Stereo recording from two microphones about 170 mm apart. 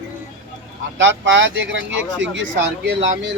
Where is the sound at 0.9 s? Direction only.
90° right.